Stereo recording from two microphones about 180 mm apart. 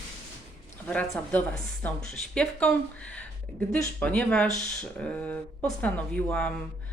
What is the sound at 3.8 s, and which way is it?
Speech, 10° left (ahead or behind).